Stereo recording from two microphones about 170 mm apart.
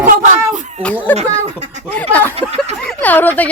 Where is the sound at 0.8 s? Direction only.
10° left (ahead or behind).